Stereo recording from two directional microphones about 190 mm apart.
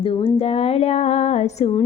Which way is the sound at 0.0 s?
30° left (ahead or behind).